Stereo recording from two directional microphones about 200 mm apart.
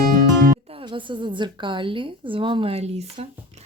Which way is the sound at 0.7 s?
25° right (ahead or behind).